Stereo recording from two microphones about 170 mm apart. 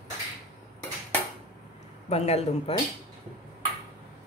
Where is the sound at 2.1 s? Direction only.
35° left (ahead or behind).